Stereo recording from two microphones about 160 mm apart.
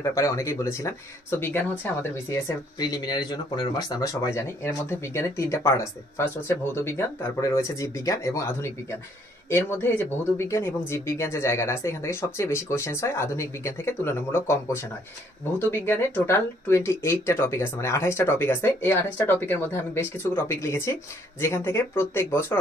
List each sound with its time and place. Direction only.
0.0 s speech: 20° left (ahead or behind)